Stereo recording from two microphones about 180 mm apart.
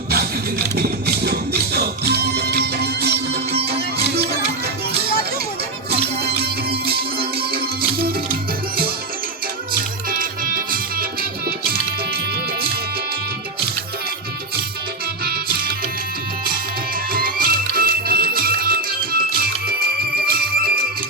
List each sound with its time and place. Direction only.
0.8 s music: 60° right (ahead or behind)
6.2 s music: 60° right (ahead or behind)
10.1 s music: 50° right (ahead or behind)
15.2 s music: 60° right (ahead or behind)
17.1 s music: 55° right (ahead or behind)